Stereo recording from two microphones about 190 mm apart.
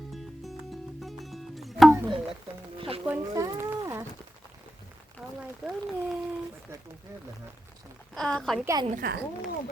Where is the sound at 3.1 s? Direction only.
15° right (ahead or behind).